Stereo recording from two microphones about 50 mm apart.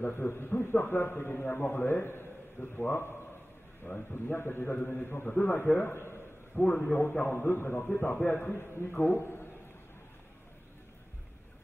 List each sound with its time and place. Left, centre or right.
0.0 s a man's voice: left
4.7 s a man's voice: left
5.0 s a man's voice: left
6.5 s a man's voice: left